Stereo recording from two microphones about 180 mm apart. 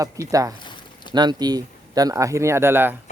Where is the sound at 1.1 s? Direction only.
25° right (ahead or behind).